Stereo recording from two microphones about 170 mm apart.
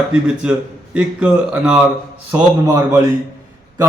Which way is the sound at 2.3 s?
20° right (ahead or behind).